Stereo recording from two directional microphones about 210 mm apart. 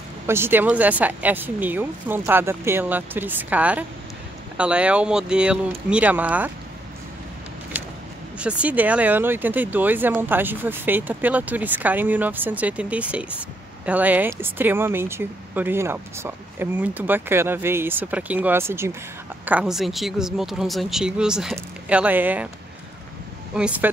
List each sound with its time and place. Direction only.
0.3 s speech: 10° right (ahead or behind)
8.4 s speech: 5° right (ahead or behind)
23.5 s speech: 5° right (ahead or behind)